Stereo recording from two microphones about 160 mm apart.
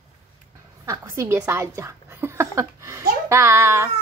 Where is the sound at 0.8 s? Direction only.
20° right (ahead or behind).